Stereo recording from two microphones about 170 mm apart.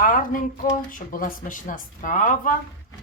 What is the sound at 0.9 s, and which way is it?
Speech, 55° left (ahead or behind).